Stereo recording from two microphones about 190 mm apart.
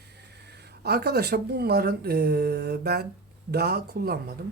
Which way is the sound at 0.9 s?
55° right (ahead or behind).